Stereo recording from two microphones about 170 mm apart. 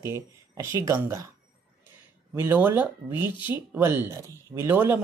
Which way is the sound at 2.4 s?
10° right (ahead or behind).